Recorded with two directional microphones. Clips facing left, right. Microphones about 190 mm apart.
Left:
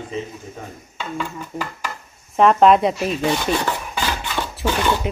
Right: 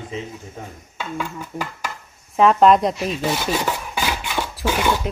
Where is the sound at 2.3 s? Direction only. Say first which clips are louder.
Left 1 dB; centre (ahead or behind).